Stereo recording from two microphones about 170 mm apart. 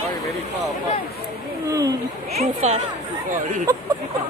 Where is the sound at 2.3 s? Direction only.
40° right (ahead or behind).